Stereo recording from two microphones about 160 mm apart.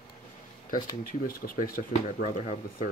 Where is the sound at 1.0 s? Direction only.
60° left (ahead or behind).